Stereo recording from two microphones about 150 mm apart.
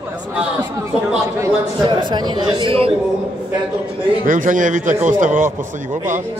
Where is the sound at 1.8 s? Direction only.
30° right (ahead or behind).